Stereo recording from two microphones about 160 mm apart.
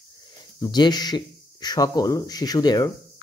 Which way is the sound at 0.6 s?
25° left (ahead or behind).